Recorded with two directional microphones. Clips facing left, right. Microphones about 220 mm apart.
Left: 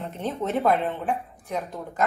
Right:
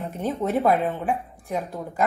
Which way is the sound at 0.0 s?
15° right (ahead or behind).